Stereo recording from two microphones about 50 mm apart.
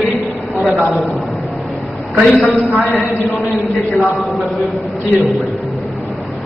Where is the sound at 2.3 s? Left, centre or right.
Centre.